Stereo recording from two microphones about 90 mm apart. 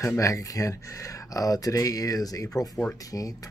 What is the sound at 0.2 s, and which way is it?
Speech, 40° left (ahead or behind).